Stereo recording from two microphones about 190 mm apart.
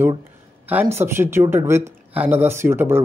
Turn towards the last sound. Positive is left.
turn(degrees=-10)  # may be behind; listen again after turning